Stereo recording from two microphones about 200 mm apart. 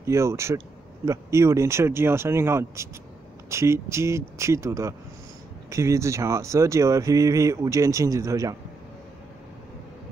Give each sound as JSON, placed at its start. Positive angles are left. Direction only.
{"t": 0.0, "sound": "speech", "side_deg": -15}